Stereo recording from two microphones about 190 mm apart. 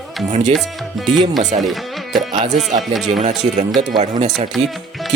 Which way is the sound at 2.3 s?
30° right (ahead or behind).